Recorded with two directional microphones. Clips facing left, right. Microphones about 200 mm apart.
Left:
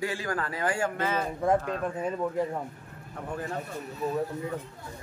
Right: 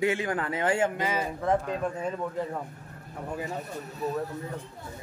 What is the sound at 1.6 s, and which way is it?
Speech, centre (ahead or behind).